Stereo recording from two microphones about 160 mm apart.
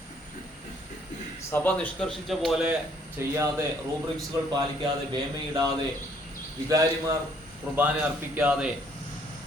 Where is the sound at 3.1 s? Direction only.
15° right (ahead or behind).